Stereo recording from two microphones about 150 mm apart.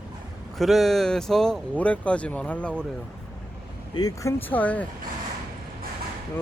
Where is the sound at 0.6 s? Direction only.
Centre (ahead or behind).